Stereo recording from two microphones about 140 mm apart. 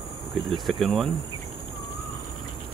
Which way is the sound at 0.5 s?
Centre (ahead or behind).